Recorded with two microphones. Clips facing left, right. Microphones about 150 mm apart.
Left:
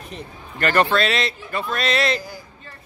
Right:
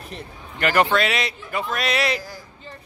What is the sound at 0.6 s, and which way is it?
Speech, 15° right (ahead or behind).